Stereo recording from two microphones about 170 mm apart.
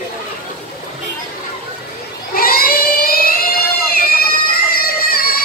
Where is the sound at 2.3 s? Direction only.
60° left (ahead or behind).